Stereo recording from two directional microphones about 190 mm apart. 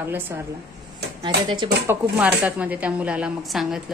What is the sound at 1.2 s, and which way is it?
Speech, 25° right (ahead or behind).